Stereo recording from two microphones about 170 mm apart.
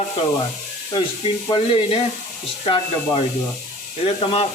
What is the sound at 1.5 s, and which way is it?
Speech, 35° left (ahead or behind).